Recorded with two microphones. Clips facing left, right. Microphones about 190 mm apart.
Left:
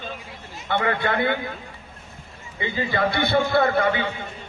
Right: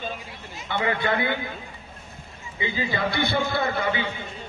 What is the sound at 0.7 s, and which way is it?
Speech, 55° left (ahead or behind).